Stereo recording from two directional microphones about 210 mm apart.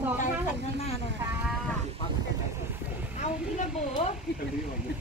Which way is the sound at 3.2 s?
35° left (ahead or behind).